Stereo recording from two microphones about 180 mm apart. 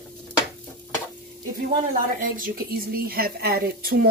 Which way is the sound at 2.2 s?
50° right (ahead or behind).